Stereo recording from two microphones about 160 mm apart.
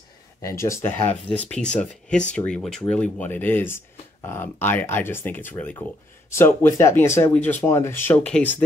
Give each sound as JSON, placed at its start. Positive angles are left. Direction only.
{"t": 0.4, "sound": "speech", "side_deg": 20}